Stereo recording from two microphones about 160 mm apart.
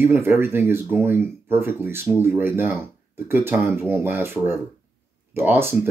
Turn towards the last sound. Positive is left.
turn(degrees=-15)  # may be behind; listen again after turning